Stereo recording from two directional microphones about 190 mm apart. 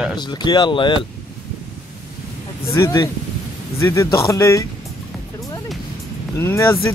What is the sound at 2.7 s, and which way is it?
Speech, 15° left (ahead or behind).